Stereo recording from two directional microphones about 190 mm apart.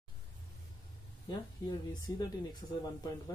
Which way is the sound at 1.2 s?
25° left (ahead or behind).